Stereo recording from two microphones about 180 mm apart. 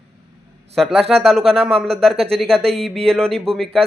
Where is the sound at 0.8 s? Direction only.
Centre (ahead or behind).